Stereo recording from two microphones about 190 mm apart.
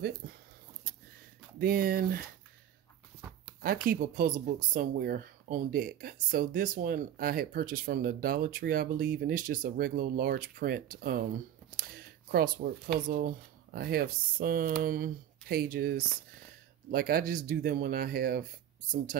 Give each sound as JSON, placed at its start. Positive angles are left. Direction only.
{"t": 0.2, "sound": "a sound", "side_deg": -50}
{"t": 1.6, "sound": "speech", "side_deg": -50}
{"t": 3.6, "sound": "speech", "side_deg": -50}